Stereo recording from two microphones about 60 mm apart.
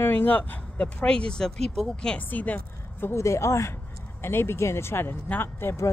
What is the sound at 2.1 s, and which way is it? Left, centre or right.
Speech, left.